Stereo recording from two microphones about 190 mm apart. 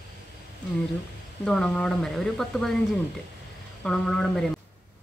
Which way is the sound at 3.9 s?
5° left (ahead or behind).